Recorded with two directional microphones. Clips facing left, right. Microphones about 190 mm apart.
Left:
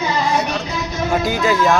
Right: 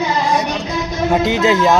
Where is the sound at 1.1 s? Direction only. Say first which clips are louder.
Right 3 dB; 25° right (ahead or behind).